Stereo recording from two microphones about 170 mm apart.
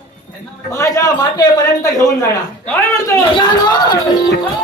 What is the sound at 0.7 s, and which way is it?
Speech, 20° left (ahead or behind).